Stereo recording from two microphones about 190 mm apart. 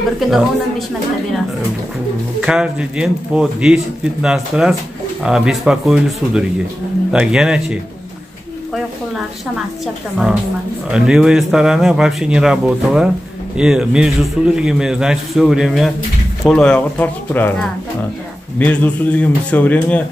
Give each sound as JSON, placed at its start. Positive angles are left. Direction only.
{"t": 0.3, "sound": "speech", "side_deg": 0}
{"t": 2.4, "sound": "speech", "side_deg": -5}
{"t": 10.9, "sound": "a man's voice", "side_deg": 0}